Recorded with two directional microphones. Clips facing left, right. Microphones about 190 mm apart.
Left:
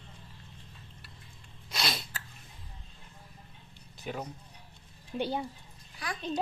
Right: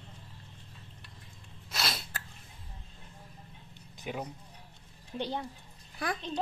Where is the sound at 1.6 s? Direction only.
Centre (ahead or behind).